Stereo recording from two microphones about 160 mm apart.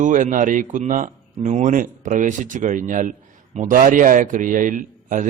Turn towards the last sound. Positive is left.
turn(degrees=-55)  # may be behind; listen again after turning